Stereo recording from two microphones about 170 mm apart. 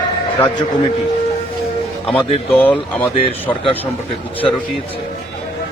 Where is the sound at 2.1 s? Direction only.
5° left (ahead or behind).